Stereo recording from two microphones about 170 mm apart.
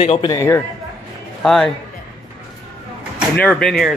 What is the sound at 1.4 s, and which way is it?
Speech, 5° left (ahead or behind).